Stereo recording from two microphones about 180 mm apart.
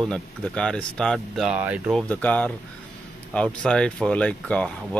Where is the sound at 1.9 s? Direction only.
10° left (ahead or behind).